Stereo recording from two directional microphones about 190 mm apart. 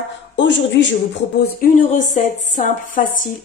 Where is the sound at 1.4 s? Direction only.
50° left (ahead or behind).